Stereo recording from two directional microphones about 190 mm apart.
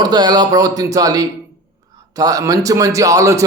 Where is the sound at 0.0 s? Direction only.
20° right (ahead or behind).